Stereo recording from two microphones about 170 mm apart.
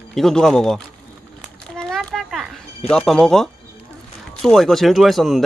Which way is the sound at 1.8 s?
Centre (ahead or behind).